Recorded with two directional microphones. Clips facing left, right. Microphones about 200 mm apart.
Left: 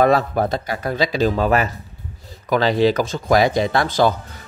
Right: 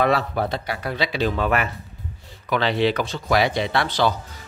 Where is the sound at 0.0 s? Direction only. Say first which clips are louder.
Left 5 dB; 45° left (ahead or behind).